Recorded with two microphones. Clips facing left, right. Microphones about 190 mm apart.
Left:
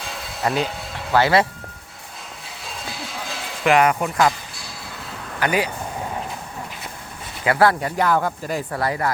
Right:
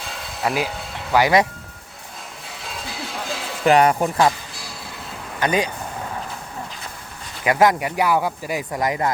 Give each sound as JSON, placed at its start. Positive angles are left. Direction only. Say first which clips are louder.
{"t": 0.4, "sound": "speech", "louder": "even", "side_deg": -10}
{"t": 3.6, "sound": "speech", "louder": "right 2 dB", "side_deg": -35}
{"t": 5.4, "sound": "speech", "louder": "right 1 dB", "side_deg": -20}
{"t": 7.4, "sound": "speech", "louder": "right 1 dB", "side_deg": -15}